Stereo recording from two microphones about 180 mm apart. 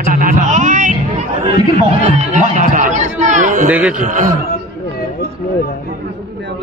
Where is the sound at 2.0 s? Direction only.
40° right (ahead or behind).